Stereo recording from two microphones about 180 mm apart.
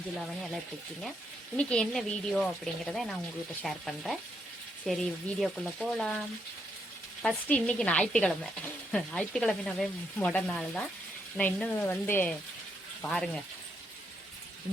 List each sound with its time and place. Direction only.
1.5 s speech: 5° left (ahead or behind)